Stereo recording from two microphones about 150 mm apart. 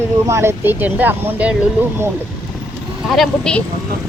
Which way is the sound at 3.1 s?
5° left (ahead or behind).